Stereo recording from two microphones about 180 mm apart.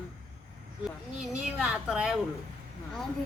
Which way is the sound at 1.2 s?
5° right (ahead or behind).